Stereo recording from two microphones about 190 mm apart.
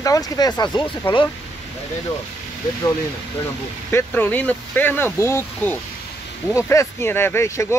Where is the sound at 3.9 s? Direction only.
10° left (ahead or behind).